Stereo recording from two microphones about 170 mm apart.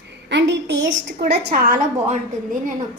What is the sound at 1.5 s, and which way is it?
A woman's voice, 55° right (ahead or behind).